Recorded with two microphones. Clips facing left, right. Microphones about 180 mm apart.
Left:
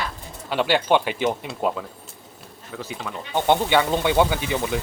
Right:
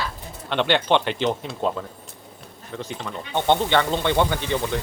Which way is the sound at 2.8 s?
5° left (ahead or behind).